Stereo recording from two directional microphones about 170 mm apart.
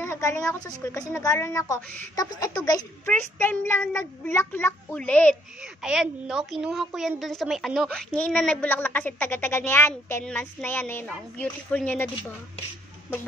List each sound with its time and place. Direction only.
0.0 s a woman's voice: 15° left (ahead or behind)
5.8 s a woman's voice: 5° right (ahead or behind)